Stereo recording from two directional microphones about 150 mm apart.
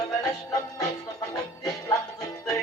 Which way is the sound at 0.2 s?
25° left (ahead or behind).